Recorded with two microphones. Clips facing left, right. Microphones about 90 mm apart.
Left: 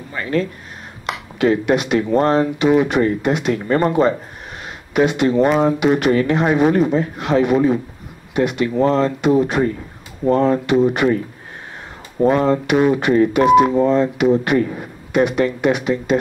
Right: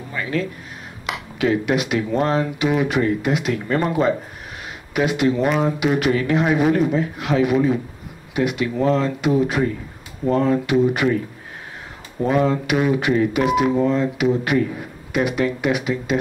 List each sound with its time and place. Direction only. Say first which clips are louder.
0.2 s speech: left 4 dB; 5° right (ahead or behind)
12.3 s speech: left 3 dB; centre (ahead or behind)